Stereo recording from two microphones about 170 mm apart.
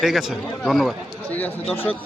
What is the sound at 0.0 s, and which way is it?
Speech, centre (ahead or behind).